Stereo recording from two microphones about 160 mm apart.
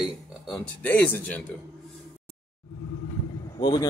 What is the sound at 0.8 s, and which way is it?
Speech, 10° left (ahead or behind).